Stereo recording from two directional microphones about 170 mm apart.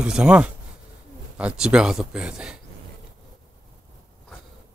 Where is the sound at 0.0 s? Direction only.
5° right (ahead or behind).